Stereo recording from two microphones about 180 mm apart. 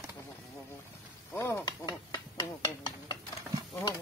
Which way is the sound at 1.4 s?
15° left (ahead or behind).